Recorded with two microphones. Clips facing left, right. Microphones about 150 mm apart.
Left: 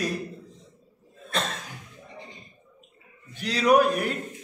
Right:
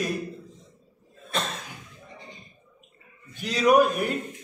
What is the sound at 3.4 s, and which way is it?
Speech, centre (ahead or behind).